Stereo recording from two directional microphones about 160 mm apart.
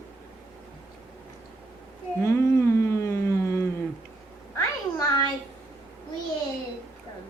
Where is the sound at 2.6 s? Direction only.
15° left (ahead or behind).